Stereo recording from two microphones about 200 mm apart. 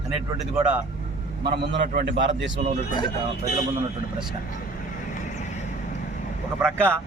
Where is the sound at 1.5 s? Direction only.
55° right (ahead or behind).